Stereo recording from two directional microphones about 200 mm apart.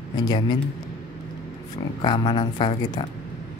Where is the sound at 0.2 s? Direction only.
20° left (ahead or behind).